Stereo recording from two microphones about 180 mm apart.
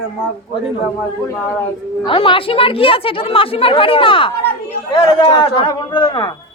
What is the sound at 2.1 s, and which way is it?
Speech, 30° left (ahead or behind).